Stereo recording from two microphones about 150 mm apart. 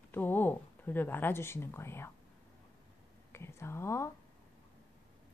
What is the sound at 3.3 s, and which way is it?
Whispering, 15° left (ahead or behind).